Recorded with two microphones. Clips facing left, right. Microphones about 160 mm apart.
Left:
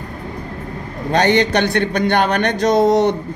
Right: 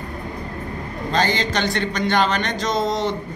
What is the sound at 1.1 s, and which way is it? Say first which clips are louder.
A man's voice: left 7 dB; 65° left (ahead or behind).